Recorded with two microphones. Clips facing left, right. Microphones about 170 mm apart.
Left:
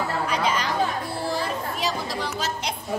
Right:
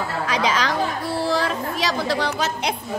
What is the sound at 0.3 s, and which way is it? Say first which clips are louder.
Chatter: right 6 dB; 90° right.